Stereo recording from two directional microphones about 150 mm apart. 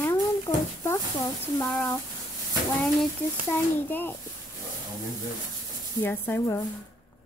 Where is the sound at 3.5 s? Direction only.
15° left (ahead or behind).